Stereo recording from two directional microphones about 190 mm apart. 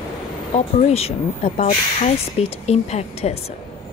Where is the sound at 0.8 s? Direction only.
35° left (ahead or behind).